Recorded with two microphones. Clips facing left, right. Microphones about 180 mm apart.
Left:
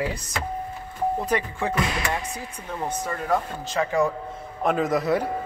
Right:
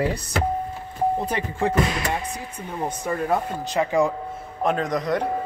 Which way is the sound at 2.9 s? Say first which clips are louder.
Right 1 dB; 15° right (ahead or behind).